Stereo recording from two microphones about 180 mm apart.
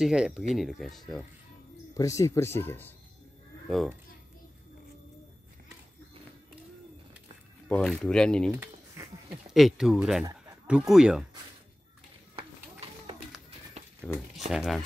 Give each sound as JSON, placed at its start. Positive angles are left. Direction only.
{"t": 0.0, "sound": "speech", "side_deg": -5}
{"t": 2.0, "sound": "speech", "side_deg": 20}
{"t": 3.6, "sound": "a child's voice", "side_deg": 0}
{"t": 7.6, "sound": "speech", "side_deg": 5}
{"t": 9.0, "sound": "a sound", "side_deg": -15}
{"t": 9.5, "sound": "speech", "side_deg": 0}
{"t": 12.4, "sound": "a sound", "side_deg": -30}
{"t": 14.0, "sound": "speech", "side_deg": 0}